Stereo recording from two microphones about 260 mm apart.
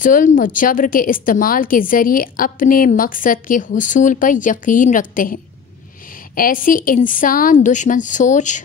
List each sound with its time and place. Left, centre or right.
0.0 s a woman's voice: left